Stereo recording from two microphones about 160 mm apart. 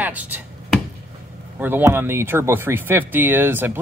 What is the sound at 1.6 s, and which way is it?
Speech, 15° right (ahead or behind).